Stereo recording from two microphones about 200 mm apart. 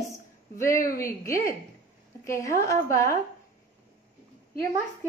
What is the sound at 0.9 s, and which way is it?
A woman's voice, 15° left (ahead or behind).